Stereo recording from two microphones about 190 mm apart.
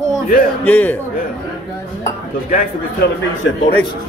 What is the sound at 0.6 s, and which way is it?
Speech, 10° left (ahead or behind).